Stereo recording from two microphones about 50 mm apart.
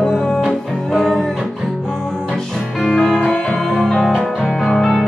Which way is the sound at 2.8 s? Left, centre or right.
Centre.